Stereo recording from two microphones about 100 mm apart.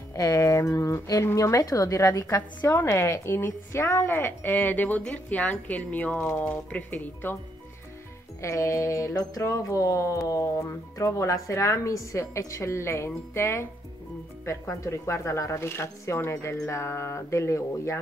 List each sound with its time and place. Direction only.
0.1 s a woman's voice: 30° left (ahead or behind)
8.4 s a woman's voice: 30° left (ahead or behind)